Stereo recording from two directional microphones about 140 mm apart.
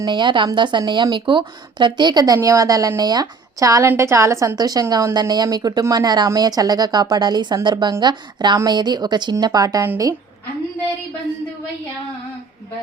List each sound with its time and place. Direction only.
0.0 s a woman's voice: 35° right (ahead or behind)